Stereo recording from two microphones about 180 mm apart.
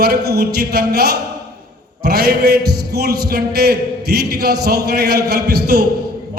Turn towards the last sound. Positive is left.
turn(degrees=-60)  # may be behind; listen again after turning